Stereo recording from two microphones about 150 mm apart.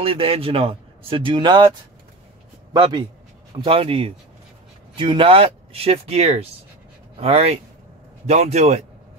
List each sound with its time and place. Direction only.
0.0 s a man's voice: 40° right (ahead or behind)
2.7 s a man's voice: 30° right (ahead or behind); by 8.8 s 45° right (ahead or behind)